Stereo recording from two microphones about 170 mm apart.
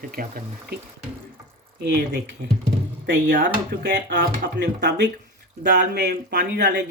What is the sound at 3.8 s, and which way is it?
Speech, 85° right.